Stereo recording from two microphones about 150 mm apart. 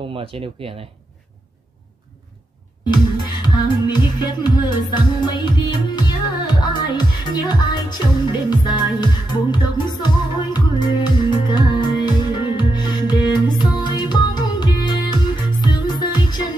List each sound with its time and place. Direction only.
0.1 s speech: 40° right (ahead or behind)
2.9 s music: 30° left (ahead or behind)